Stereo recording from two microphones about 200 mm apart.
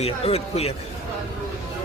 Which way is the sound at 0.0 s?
30° left (ahead or behind).